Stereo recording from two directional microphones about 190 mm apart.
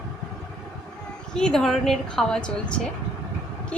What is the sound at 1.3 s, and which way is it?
A woman's voice, 5° left (ahead or behind).